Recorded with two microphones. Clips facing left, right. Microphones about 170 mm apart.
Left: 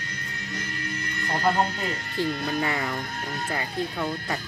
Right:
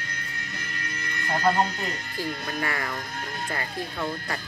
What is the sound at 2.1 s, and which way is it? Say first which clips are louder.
Speech: left 7 dB; 20° left (ahead or behind).